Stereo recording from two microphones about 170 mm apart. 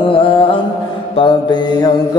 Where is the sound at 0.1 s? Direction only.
30° left (ahead or behind).